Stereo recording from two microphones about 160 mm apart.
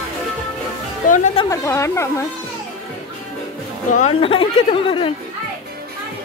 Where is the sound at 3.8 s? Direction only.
50° left (ahead or behind).